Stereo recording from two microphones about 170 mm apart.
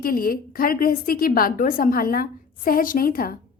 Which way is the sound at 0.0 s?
60° left (ahead or behind).